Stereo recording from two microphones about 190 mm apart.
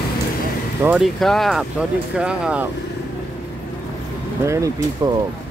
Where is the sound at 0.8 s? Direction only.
Centre (ahead or behind).